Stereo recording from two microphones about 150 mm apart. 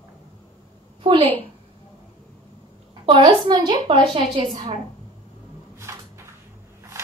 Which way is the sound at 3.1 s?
35° right (ahead or behind).